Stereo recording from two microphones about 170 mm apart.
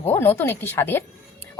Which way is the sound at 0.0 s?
15° left (ahead or behind).